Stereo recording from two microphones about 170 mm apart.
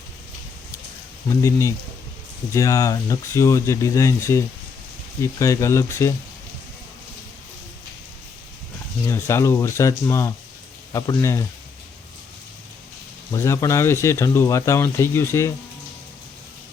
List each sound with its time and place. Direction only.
1.3 s speech: 15° left (ahead or behind)
9.0 s speech: 15° left (ahead or behind)
13.3 s speech: 15° left (ahead or behind)